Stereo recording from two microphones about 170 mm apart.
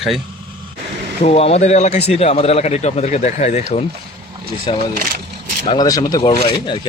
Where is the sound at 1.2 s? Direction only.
40° left (ahead or behind).